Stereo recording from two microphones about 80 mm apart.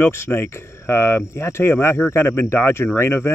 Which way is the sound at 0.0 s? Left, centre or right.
Left.